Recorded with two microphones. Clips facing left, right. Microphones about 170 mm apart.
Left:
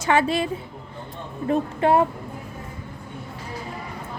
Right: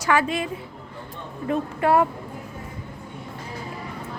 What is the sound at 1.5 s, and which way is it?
Speech, 25° left (ahead or behind).